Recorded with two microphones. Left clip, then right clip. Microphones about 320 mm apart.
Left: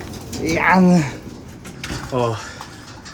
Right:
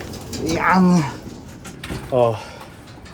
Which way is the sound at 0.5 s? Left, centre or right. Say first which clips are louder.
Left 2 dB; centre.